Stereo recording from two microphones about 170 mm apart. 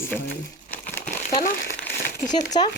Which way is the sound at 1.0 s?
50° left (ahead or behind).